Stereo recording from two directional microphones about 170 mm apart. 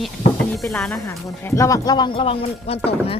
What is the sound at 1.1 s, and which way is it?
Speech, 15° left (ahead or behind).